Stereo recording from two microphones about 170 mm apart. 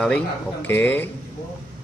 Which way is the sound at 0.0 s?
10° left (ahead or behind).